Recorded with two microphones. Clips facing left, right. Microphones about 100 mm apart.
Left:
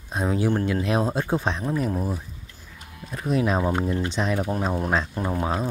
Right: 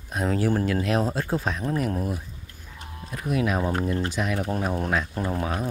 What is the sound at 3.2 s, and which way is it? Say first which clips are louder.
Speech: left 2 dB; 30° left (ahead or behind).